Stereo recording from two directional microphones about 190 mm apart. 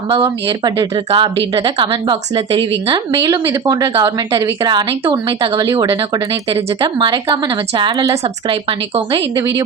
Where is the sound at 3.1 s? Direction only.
15° right (ahead or behind).